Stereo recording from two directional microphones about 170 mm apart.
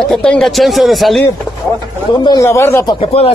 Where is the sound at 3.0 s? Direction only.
35° left (ahead or behind).